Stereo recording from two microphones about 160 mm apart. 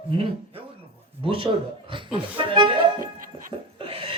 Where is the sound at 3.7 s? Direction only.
35° right (ahead or behind).